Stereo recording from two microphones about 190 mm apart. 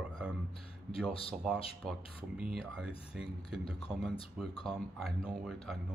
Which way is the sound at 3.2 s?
30° left (ahead or behind).